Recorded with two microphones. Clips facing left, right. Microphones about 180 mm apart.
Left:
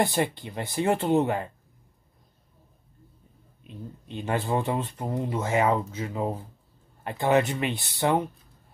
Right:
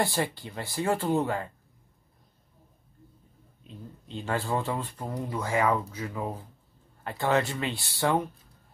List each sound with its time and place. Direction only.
0.0 s speech: 20° left (ahead or behind)
3.6 s speech: 20° left (ahead or behind)